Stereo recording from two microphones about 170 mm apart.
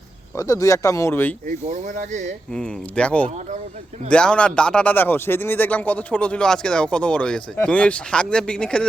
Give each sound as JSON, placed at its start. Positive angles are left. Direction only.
{"t": 0.3, "sound": "speech", "side_deg": 20}
{"t": 1.5, "sound": "speech", "side_deg": -45}
{"t": 2.6, "sound": "speech", "side_deg": 5}